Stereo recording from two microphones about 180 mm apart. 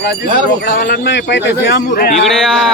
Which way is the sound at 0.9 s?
75° left (ahead or behind).